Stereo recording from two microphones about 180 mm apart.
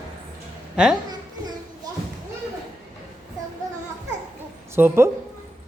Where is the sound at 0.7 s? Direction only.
5° right (ahead or behind).